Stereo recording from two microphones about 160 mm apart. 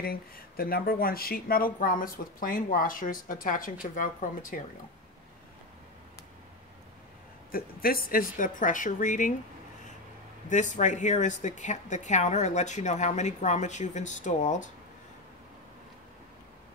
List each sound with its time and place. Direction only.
0.0 s speech: 70° left (ahead or behind)
7.5 s speech: 65° left (ahead or behind)
10.5 s a woman's voice: 50° left (ahead or behind)